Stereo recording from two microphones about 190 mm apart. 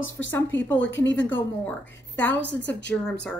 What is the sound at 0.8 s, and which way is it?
Speech, 75° left (ahead or behind).